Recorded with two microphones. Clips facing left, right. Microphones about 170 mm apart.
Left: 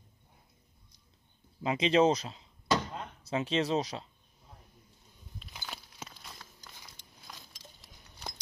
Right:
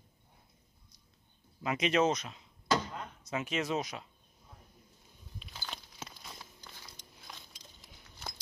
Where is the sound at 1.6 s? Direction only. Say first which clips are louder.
Left 4 dB; 25° left (ahead or behind).